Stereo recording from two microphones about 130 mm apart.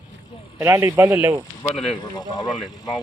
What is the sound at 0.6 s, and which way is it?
Speech, 20° right (ahead or behind).